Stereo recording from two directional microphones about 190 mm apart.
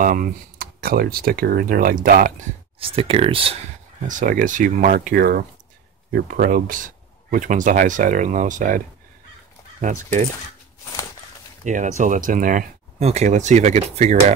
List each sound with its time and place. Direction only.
0.0 s speech: 45° right (ahead or behind)
2.8 s speech: 30° right (ahead or behind)
4.1 s speech: 45° right (ahead or behind)
11.6 s speech: 40° right (ahead or behind)